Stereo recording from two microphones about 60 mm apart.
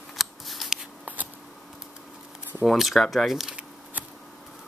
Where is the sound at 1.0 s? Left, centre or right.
Right.